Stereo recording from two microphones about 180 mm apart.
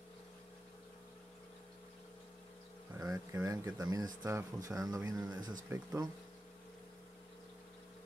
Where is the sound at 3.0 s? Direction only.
15° right (ahead or behind).